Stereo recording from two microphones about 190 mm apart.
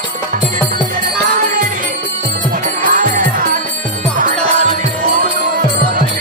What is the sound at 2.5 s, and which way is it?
Music, 45° right (ahead or behind).